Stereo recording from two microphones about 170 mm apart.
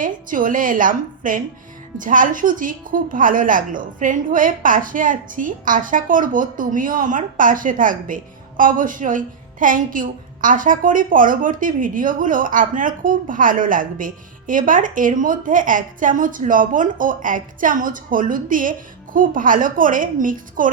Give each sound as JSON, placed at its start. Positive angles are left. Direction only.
{"t": 0.0, "sound": "a woman's voice", "side_deg": -50}